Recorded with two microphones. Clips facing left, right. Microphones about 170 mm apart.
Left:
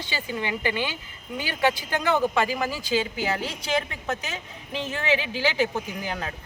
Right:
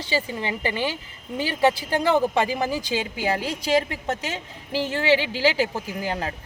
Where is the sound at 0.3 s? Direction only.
30° right (ahead or behind).